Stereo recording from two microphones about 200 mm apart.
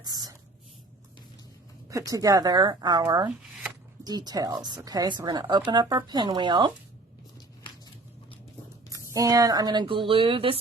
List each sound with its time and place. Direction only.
0.0 s a sound: 20° right (ahead or behind)
1.9 s speech: 15° right (ahead or behind)
8.9 s speech: 15° right (ahead or behind)